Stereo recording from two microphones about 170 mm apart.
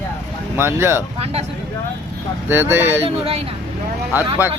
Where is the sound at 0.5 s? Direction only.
15° right (ahead or behind).